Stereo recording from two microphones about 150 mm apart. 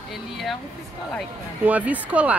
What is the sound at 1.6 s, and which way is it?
Speech, 10° right (ahead or behind).